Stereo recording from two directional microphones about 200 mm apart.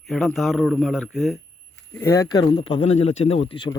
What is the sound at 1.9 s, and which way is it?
A man's voice, 15° left (ahead or behind).